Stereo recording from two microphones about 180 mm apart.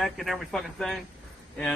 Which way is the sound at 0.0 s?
Centre (ahead or behind).